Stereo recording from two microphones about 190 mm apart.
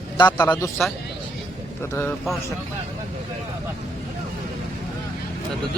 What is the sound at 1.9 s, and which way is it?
Speech, 10° left (ahead or behind).